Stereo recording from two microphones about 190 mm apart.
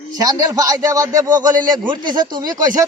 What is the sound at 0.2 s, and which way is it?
Speech, 20° right (ahead or behind).